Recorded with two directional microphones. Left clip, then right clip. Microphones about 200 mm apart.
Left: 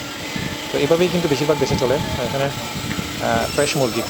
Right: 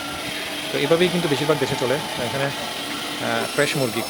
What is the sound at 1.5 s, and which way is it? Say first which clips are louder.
Speech: left 2 dB; 5° left (ahead or behind).